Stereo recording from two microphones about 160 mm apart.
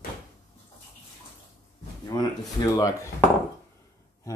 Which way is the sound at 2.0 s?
25° left (ahead or behind).